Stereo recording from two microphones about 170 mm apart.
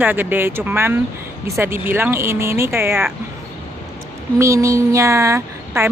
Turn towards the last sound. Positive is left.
turn(degrees=-15)  # may be behind; listen again after turning